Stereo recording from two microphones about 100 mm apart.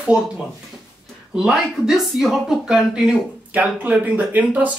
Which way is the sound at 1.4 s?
5° right (ahead or behind).